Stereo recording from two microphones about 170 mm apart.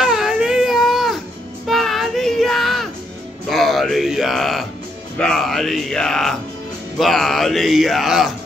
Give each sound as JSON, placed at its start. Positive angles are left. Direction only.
{"t": 0.0, "sound": "baby cry", "side_deg": 0}
{"t": 1.7, "sound": "child singing", "side_deg": 0}
{"t": 3.4, "sound": "a sound", "side_deg": 0}
{"t": 5.2, "sound": "speech", "side_deg": 5}